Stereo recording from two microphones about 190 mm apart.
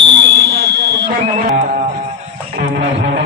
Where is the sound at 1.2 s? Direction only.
40° right (ahead or behind).